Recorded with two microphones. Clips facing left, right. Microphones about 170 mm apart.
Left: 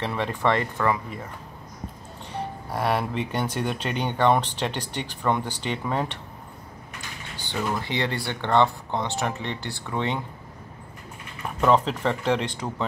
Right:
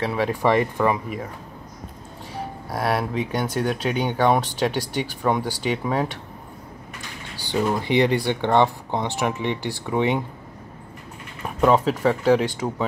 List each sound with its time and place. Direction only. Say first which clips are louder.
0.0 s speech: right 4 dB; 5° right (ahead or behind)
2.3 s speech: even; 5° right (ahead or behind)
7.3 s speech: right 6 dB; 15° right (ahead or behind)
11.6 s speech: right 3 dB; 5° right (ahead or behind)